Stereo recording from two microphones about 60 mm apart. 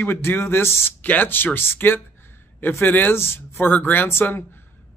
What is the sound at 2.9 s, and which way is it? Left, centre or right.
Speech, left.